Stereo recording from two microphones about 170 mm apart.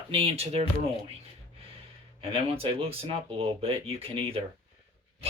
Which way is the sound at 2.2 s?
35° right (ahead or behind).